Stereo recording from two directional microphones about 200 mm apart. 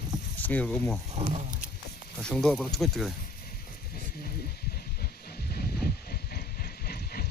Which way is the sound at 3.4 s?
45° left (ahead or behind).